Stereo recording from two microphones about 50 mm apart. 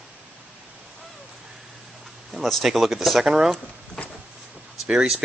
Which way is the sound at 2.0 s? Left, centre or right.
Centre.